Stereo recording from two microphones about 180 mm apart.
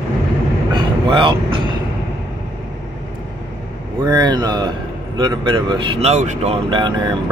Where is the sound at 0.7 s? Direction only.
25° right (ahead or behind).